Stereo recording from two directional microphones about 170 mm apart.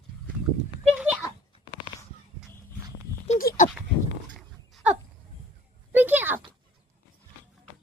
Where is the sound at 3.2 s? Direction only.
50° left (ahead or behind).